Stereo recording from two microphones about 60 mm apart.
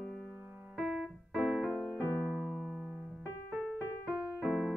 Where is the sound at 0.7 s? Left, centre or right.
Right.